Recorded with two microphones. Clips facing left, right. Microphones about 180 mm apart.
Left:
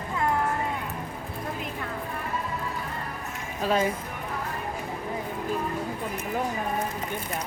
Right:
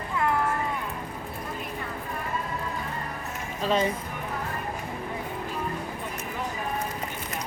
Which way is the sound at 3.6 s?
5° left (ahead or behind).